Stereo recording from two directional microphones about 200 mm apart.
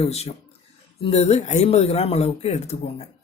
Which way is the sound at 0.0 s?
30° left (ahead or behind).